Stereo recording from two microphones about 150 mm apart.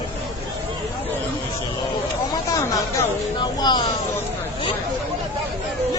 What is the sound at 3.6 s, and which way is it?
Speech, 30° left (ahead or behind).